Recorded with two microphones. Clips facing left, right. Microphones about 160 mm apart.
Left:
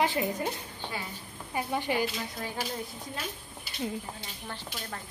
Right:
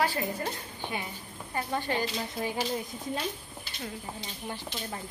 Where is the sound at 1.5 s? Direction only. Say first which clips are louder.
Left 1 dB; 10° left (ahead or behind).